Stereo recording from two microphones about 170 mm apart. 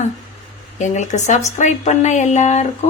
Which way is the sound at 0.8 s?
45° left (ahead or behind).